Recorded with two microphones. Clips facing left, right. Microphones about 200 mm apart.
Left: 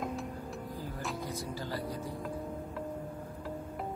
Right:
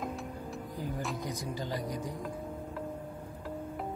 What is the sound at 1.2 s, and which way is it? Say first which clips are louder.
Speech: right 1 dB; 15° right (ahead or behind).